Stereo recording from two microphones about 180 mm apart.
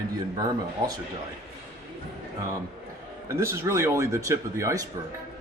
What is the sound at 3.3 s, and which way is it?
Speech, 15° right (ahead or behind).